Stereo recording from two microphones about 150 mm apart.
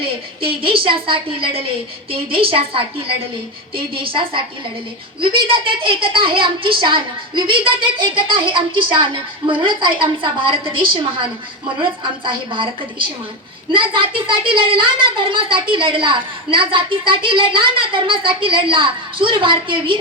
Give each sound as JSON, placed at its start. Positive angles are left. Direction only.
{"t": 0.4, "sound": "a woman's voice", "side_deg": -35}